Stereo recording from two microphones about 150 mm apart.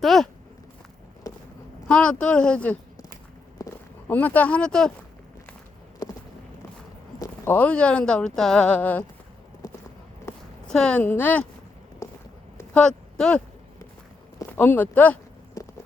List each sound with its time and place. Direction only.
0.0 s speech: centre (ahead or behind)
1.2 s a sound: 25° left (ahead or behind)
1.9 s speech: 5° left (ahead or behind)
3.6 s a sound: 20° left (ahead or behind)
4.1 s speech: 10° left (ahead or behind)
7.2 s speech: 15° left (ahead or behind)
9.6 s clip-clop: 25° left (ahead or behind)
10.3 s a sound: 20° left (ahead or behind)
10.7 s speech: 5° left (ahead or behind)
12.0 s walk: 20° left (ahead or behind)
12.7 s speech: 5° left (ahead or behind)
15.6 s walk: 20° left (ahead or behind)